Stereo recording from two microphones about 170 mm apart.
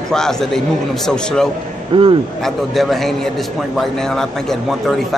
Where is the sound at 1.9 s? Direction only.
30° right (ahead or behind).